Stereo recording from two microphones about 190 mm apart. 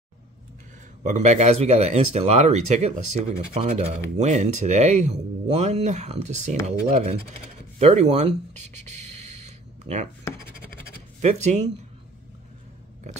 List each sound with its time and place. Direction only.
1.0 s speech: 35° right (ahead or behind)
9.0 s a sound: 35° right (ahead or behind)
11.1 s speech: 35° right (ahead or behind)